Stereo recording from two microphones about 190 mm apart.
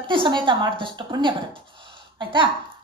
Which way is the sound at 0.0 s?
25° right (ahead or behind).